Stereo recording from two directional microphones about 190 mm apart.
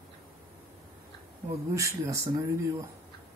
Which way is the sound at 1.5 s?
15° right (ahead or behind).